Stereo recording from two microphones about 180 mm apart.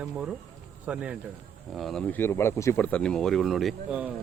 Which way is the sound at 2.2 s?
15° left (ahead or behind).